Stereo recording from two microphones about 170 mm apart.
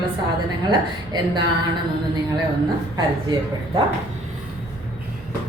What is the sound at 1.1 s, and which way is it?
Speech, 25° right (ahead or behind).